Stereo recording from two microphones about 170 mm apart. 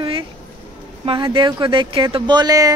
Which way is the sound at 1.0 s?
30° right (ahead or behind).